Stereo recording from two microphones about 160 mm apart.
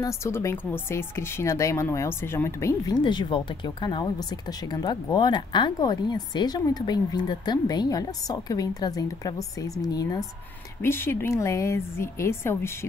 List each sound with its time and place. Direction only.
0.2 s speech: 15° left (ahead or behind)
3.0 s speech: 30° left (ahead or behind)
10.8 s speech: 15° left (ahead or behind)